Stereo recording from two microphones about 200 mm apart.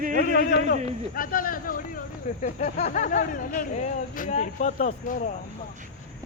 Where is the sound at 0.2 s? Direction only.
50° left (ahead or behind).